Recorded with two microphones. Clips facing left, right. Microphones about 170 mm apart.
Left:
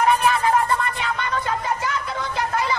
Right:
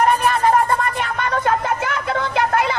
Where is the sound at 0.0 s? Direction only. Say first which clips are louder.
Right 2 dB; 40° right (ahead or behind).